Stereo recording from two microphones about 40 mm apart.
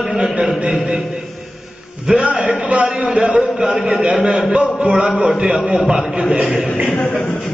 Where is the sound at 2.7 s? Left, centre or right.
Right.